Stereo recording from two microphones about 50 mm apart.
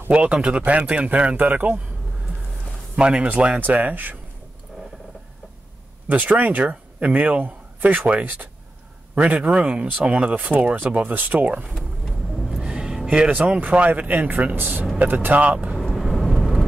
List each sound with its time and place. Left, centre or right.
0.1 s speech: right
3.0 s speech: right
6.0 s a man's voice: right
11.7 s vehicle: centre
12.4 s a sound: centre
13.3 s speech: right
15.3 s speech: right
15.8 s vehicle: centre